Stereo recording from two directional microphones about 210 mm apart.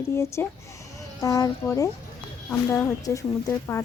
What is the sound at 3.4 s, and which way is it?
Speech, 15° left (ahead or behind).